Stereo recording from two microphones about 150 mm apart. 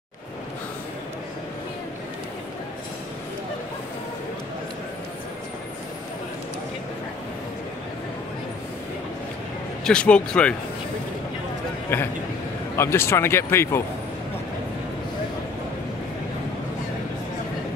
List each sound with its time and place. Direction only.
9.8 s speech: 5° left (ahead or behind)
11.9 s speech: 15° left (ahead or behind)